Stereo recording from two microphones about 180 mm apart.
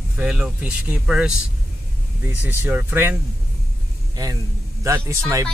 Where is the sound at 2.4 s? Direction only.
10° right (ahead or behind).